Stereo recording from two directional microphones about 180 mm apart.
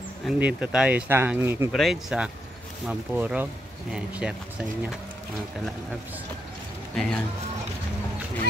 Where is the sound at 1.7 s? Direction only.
Centre (ahead or behind).